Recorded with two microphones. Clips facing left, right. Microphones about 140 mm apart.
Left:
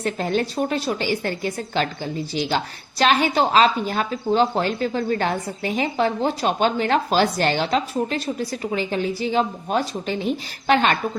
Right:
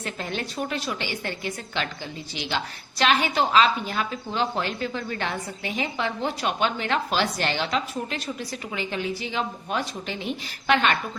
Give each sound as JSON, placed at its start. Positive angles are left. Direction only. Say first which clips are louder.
{"t": 0.0, "sound": "speech", "louder": "left 9 dB", "side_deg": 40}